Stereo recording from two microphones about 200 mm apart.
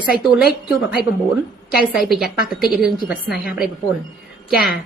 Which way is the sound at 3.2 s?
45° left (ahead or behind).